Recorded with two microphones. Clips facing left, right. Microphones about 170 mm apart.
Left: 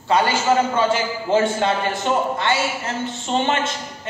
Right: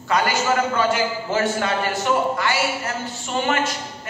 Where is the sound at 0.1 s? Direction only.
30° left (ahead or behind).